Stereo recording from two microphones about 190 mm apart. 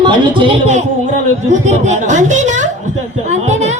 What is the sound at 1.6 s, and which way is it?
A woman's voice, 40° right (ahead or behind).